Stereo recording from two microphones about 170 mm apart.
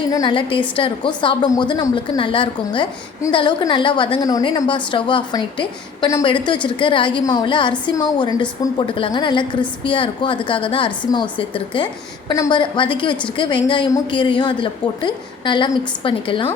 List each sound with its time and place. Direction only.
0.1 s a woman's voice: 25° left (ahead or behind)